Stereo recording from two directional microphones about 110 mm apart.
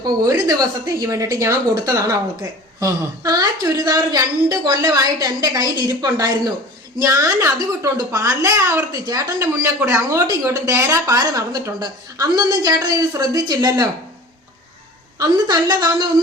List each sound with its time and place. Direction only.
0.0 s a woman's voice: 35° right (ahead or behind)
15.2 s a woman's voice: 40° right (ahead or behind)